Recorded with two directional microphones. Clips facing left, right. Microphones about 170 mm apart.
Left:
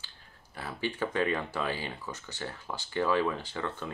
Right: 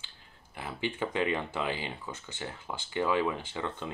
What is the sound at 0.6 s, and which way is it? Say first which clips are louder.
Speech: even; 15° right (ahead or behind).